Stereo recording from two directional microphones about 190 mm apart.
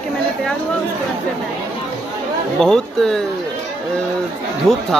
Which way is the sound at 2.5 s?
5° left (ahead or behind).